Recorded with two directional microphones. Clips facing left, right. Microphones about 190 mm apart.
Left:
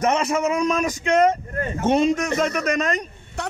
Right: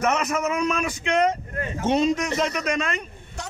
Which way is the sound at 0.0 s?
30° left (ahead or behind).